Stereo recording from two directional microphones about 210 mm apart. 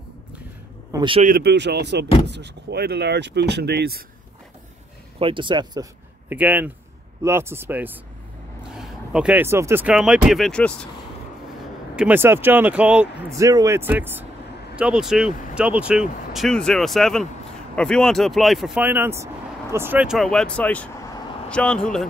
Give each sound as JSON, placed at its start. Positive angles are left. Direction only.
{"t": 0.9, "sound": "speech", "side_deg": -25}
{"t": 1.2, "sound": "speech", "side_deg": -50}
{"t": 5.2, "sound": "speech", "side_deg": -25}
{"t": 6.2, "sound": "speech", "side_deg": -10}
{"t": 11.9, "sound": "speech", "side_deg": -5}